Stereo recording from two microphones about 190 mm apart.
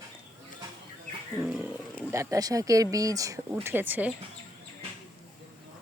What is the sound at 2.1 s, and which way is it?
Speech, 15° right (ahead or behind).